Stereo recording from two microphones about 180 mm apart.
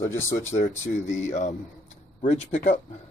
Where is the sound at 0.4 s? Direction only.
45° left (ahead or behind).